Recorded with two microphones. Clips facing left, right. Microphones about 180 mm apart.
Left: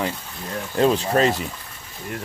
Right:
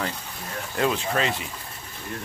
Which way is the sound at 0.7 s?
35° left (ahead or behind).